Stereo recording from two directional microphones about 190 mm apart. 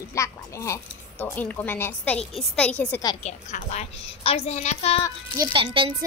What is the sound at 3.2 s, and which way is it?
A woman's voice, 35° left (ahead or behind).